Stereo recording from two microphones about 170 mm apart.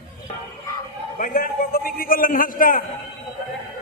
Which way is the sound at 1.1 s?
55° left (ahead or behind).